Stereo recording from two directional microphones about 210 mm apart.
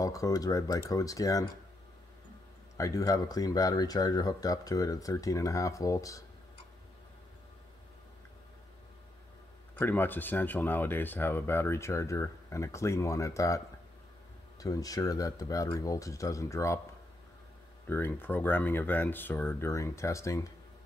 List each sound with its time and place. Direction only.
0.0 s speech: 15° left (ahead or behind)
2.8 s speech: 15° left (ahead or behind)
9.8 s speech: 10° left (ahead or behind)
14.6 s speech: 15° left (ahead or behind)
17.8 s speech: 10° left (ahead or behind)